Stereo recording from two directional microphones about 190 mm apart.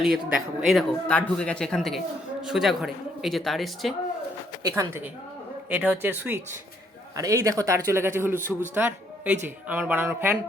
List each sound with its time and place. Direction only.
0.0 s speech: 5° right (ahead or behind)
4.7 s speech: 10° right (ahead or behind)